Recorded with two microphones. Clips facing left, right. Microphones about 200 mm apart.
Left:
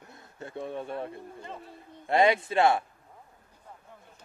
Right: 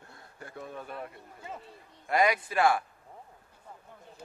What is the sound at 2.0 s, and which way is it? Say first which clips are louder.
Speech: left 3 dB; 25° left (ahead or behind).